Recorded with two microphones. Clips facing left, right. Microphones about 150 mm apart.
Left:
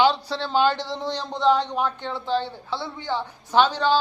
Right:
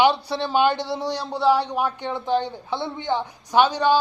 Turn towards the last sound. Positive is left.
turn(degrees=-15)  # may be behind; listen again after turning